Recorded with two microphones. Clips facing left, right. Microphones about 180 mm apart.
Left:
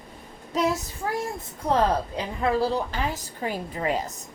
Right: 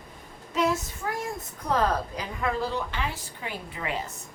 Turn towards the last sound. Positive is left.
turn(degrees=40)  # may be behind; listen again after turning